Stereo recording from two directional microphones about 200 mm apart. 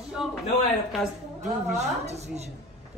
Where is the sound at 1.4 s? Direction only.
35° right (ahead or behind).